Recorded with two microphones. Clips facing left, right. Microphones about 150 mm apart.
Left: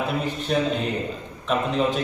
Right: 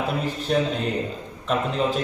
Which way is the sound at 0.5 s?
Centre (ahead or behind).